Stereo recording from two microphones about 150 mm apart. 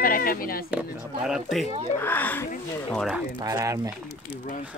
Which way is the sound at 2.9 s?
Centre (ahead or behind).